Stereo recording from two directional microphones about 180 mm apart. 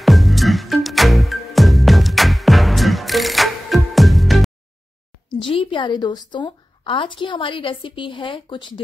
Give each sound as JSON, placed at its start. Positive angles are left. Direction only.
{"t": 0.0, "sound": "music", "side_deg": 0}
{"t": 5.3, "sound": "a woman's voice", "side_deg": 30}